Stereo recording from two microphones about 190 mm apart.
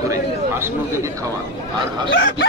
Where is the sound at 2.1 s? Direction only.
60° left (ahead or behind).